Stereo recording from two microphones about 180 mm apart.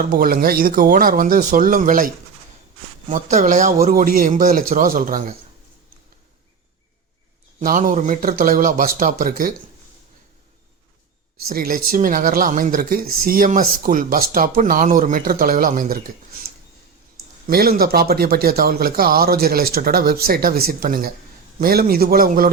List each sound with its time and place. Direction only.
0.0 s speech: 50° right (ahead or behind)
3.1 s speech: 40° right (ahead or behind)
7.6 s speech: 50° right (ahead or behind)
11.4 s speech: 55° right (ahead or behind)
17.4 s a man's voice: 55° right (ahead or behind)